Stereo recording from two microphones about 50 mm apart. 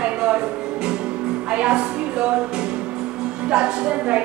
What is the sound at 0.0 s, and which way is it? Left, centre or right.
Music, centre.